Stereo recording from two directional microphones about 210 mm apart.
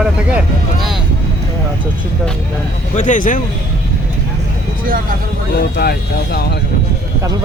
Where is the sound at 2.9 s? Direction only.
35° left (ahead or behind).